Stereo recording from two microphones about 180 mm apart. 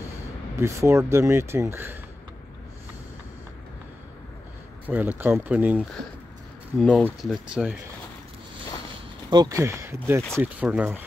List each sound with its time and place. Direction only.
0.6 s speech: 15° right (ahead or behind)
4.8 s speech: 10° right (ahead or behind)
9.3 s speech: 20° right (ahead or behind)